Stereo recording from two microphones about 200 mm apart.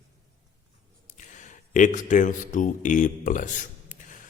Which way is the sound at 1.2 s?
40° left (ahead or behind).